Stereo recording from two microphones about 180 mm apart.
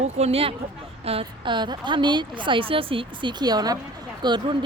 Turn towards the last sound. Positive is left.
turn(degrees=-25)  # may be behind; listen again after turning